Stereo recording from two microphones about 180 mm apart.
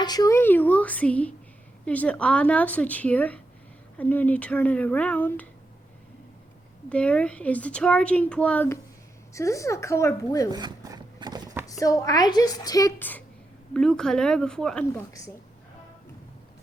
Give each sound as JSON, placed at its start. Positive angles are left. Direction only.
{"t": 0.0, "sound": "speech", "side_deg": 20}
{"t": 6.9, "sound": "speech", "side_deg": 5}
{"t": 10.5, "sound": "a sound", "side_deg": -20}
{"t": 11.6, "sound": "a woman's voice", "side_deg": 20}